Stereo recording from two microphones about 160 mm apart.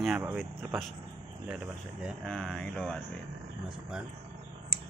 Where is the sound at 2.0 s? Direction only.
5° left (ahead or behind).